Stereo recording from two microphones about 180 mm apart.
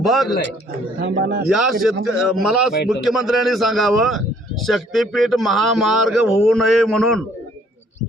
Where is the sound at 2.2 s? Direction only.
Centre (ahead or behind).